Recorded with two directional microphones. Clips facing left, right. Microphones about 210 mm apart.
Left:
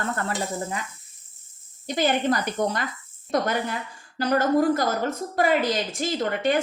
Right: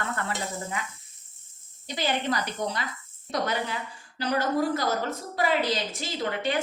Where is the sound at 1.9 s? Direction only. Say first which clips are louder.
Left 6 dB; 50° left (ahead or behind).